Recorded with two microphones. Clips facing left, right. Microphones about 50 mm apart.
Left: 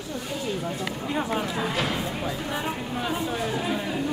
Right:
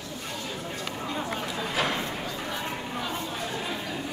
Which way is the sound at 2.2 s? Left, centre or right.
Centre.